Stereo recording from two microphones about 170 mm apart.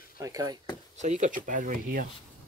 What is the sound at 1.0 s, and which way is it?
Speech, 45° right (ahead or behind).